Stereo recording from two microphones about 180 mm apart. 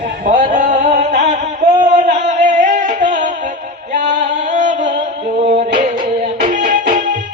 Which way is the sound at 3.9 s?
45° right (ahead or behind).